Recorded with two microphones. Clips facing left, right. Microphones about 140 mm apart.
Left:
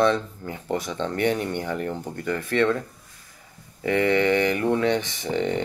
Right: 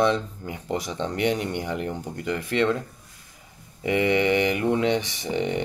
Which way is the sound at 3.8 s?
15° right (ahead or behind).